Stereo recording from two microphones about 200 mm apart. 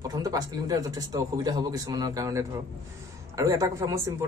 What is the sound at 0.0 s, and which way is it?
A man's voice, 20° right (ahead or behind).